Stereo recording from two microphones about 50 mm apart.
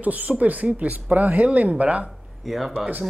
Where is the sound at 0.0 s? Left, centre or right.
Right.